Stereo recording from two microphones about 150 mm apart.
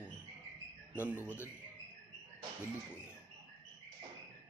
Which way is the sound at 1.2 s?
15° left (ahead or behind).